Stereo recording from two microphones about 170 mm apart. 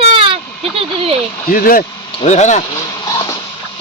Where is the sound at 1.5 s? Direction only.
60° left (ahead or behind).